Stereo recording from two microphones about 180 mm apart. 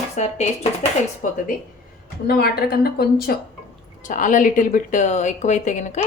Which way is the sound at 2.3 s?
60° left (ahead or behind).